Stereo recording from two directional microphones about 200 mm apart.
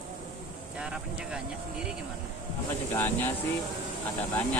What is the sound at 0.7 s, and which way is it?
Speech, 5° right (ahead or behind).